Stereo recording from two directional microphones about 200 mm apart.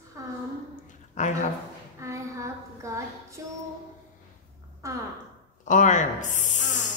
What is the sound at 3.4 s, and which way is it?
Music, 15° right (ahead or behind).